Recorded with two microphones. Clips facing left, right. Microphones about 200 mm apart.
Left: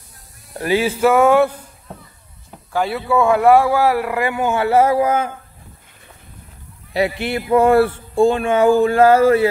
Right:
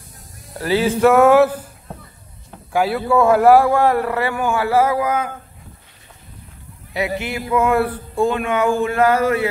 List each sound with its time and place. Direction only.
0.6 s speech: 15° left (ahead or behind)
1.0 s music: centre (ahead or behind)
2.9 s speech: centre (ahead or behind); by 5.3 s 25° left (ahead or behind)
6.9 s speech: 30° left (ahead or behind)